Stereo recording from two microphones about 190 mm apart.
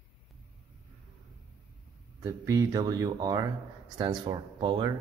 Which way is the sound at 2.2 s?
15° right (ahead or behind).